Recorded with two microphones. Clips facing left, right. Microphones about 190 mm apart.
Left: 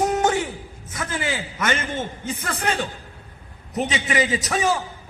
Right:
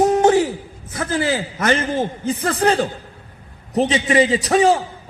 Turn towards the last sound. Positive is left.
turn(degrees=-30)  # may be behind; listen again after turning